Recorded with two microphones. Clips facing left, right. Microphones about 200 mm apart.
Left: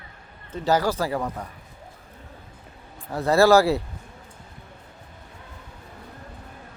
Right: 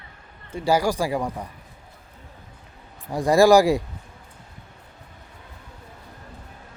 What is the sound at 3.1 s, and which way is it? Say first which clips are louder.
Speech: right 2 dB; 15° right (ahead or behind).